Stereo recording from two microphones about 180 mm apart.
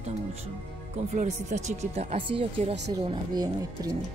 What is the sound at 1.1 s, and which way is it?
Speech, 40° right (ahead or behind).